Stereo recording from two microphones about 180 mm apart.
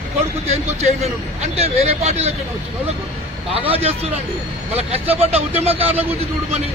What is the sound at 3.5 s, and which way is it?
Speech, 30° right (ahead or behind).